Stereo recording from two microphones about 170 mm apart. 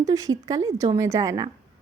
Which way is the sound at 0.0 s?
20° right (ahead or behind).